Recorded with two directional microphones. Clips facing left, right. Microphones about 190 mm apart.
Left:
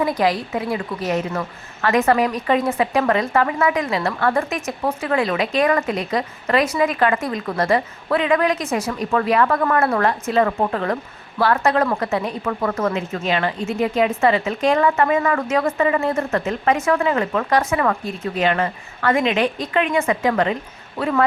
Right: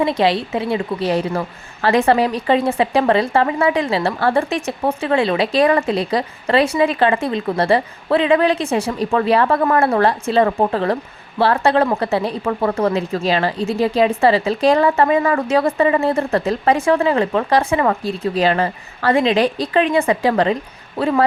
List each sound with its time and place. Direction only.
0.0 s a woman's voice: 25° right (ahead or behind)